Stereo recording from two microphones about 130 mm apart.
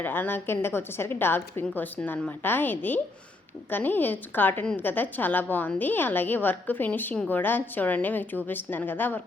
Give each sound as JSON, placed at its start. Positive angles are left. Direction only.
{"t": 0.0, "sound": "a woman's voice", "side_deg": 15}